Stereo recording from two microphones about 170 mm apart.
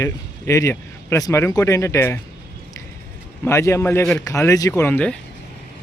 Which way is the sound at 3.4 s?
15° left (ahead or behind).